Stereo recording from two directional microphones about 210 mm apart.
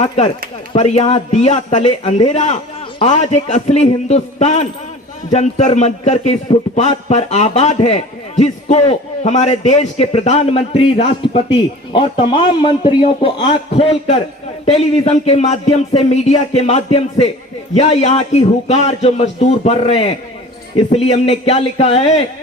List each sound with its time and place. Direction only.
0.7 s a man's voice: 30° left (ahead or behind)